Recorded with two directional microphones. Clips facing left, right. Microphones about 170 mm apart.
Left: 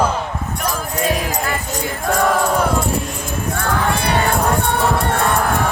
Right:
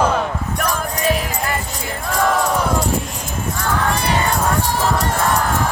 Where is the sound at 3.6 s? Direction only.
60° left (ahead or behind).